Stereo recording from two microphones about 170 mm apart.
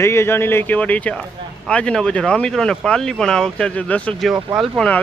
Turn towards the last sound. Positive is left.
turn(degrees=0)  # may be behind; listen again after turning